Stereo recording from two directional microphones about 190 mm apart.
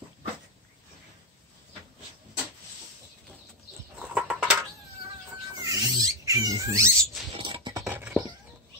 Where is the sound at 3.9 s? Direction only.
5° right (ahead or behind).